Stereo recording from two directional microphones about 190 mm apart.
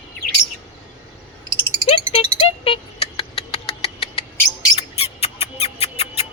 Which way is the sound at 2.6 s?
30° left (ahead or behind).